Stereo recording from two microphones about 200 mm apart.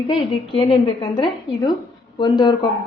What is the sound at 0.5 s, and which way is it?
A woman's voice, 25° left (ahead or behind).